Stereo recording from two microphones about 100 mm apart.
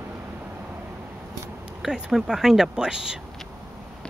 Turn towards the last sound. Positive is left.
turn(degrees=-5)  # may be behind; listen again after turning